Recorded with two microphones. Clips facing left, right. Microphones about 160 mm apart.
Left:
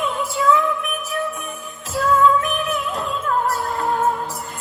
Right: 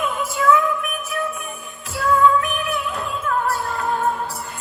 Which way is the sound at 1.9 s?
40° left (ahead or behind).